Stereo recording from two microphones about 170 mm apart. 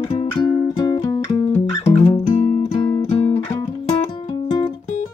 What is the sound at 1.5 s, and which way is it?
Music, 40° left (ahead or behind).